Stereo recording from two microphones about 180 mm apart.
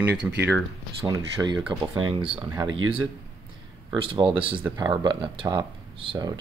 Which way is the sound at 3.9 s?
30° right (ahead or behind).